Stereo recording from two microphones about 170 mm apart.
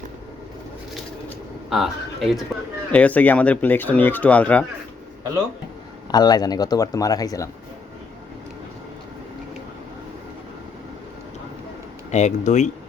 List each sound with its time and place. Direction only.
1.7 s speech: centre (ahead or behind)
6.1 s speech: 25° left (ahead or behind)
12.1 s speech: 45° left (ahead or behind)